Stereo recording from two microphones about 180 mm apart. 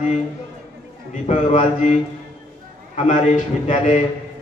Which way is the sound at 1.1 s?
40° left (ahead or behind).